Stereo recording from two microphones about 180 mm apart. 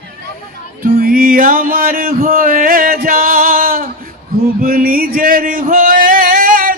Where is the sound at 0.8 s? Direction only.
55° right (ahead or behind).